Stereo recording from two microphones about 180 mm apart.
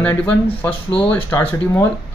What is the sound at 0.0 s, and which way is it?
Speech, 5° left (ahead or behind).